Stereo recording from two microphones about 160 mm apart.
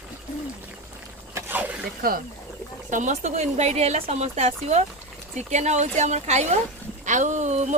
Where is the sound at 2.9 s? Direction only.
50° right (ahead or behind).